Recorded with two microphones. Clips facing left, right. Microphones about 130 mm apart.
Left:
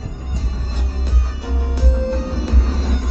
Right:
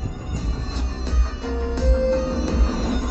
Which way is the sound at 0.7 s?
10° left (ahead or behind).